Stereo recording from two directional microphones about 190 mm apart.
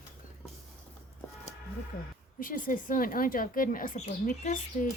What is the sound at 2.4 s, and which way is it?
Speech, 45° left (ahead or behind).